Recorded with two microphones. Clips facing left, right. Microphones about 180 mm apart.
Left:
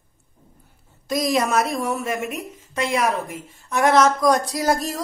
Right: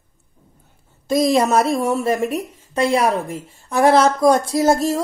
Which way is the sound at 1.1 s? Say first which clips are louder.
Right 5 dB; 30° right (ahead or behind).